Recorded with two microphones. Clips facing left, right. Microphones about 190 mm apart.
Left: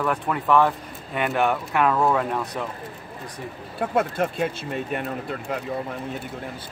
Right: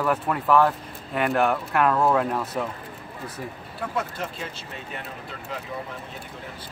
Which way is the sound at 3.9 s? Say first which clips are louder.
Left 8 dB; 55° left (ahead or behind).